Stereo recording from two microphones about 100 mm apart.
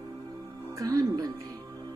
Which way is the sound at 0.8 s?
40° right (ahead or behind).